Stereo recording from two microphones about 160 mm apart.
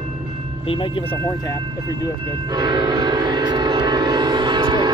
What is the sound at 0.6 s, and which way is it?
Speech, 35° left (ahead or behind).